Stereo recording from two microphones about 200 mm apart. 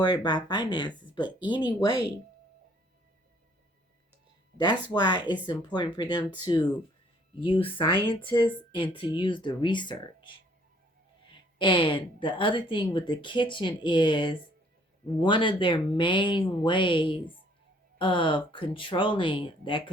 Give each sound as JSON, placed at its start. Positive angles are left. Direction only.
{"t": 0.0, "sound": "a woman's voice", "side_deg": 20}
{"t": 4.5, "sound": "a woman's voice", "side_deg": 20}
{"t": 11.2, "sound": "a woman's voice", "side_deg": 25}